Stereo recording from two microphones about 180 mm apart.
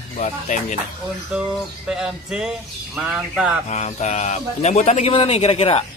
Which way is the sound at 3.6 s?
40° left (ahead or behind).